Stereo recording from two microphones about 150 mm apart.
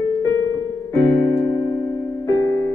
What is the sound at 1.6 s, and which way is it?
Music, 25° left (ahead or behind).